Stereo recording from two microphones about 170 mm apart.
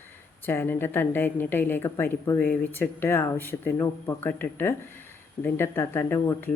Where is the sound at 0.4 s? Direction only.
10° left (ahead or behind).